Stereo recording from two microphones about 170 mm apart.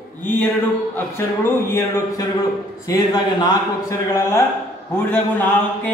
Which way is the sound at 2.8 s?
25° left (ahead or behind).